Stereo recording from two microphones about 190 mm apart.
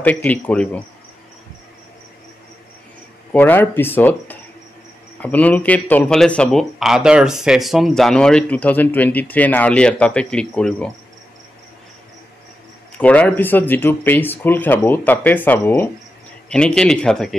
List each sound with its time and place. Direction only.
0.0 s speech: 10° left (ahead or behind)
3.3 s speech: 10° left (ahead or behind)
12.9 s speech: 5° left (ahead or behind)